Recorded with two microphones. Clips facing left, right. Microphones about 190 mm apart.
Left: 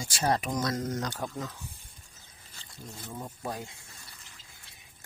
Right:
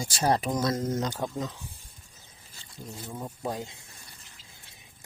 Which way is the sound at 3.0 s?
15° right (ahead or behind).